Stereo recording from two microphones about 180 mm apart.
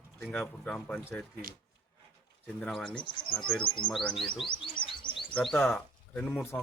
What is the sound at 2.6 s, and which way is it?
Speech, 5° left (ahead or behind).